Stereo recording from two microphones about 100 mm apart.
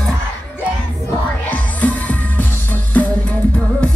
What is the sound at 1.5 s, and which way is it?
Music, 15° left (ahead or behind).